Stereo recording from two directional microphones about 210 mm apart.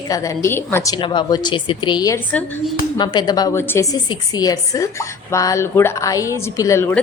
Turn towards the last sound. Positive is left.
turn(degrees=10)  # may be behind; listen again after turning